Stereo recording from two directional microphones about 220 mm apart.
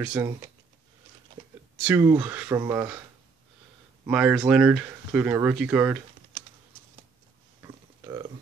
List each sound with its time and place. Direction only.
0.0 s speech: 10° right (ahead or behind)
1.8 s speech: 10° right (ahead or behind)
4.0 s speech: 5° right (ahead or behind)
7.6 s a sound: 15° right (ahead or behind)